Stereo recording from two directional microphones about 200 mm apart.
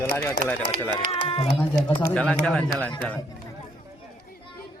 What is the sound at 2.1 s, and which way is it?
Speech, 5° left (ahead or behind).